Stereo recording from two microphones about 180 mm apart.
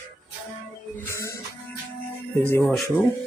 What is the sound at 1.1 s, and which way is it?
Music, 15° left (ahead or behind).